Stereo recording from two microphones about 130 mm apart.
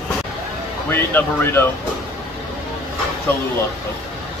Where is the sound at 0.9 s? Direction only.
15° left (ahead or behind).